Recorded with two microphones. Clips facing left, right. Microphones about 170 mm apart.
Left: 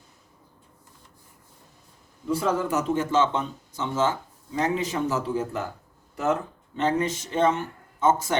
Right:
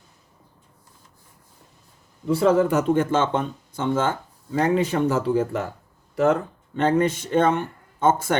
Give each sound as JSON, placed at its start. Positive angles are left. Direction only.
{"t": 2.4, "sound": "speech", "side_deg": -60}